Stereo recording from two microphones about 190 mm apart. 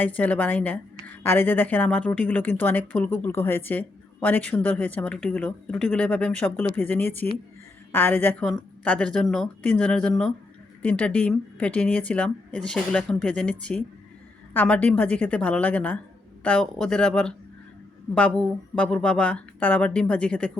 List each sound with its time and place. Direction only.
0.0 s a woman's voice: 10° left (ahead or behind)